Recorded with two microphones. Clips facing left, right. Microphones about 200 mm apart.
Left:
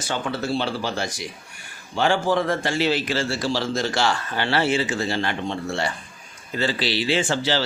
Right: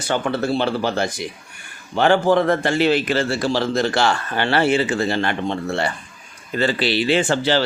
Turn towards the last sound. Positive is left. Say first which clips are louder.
# right 4 dB
turn(degrees=-55)  # may be behind; listen again after turning